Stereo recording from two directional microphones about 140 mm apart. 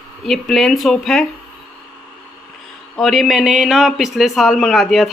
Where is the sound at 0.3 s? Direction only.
Centre (ahead or behind).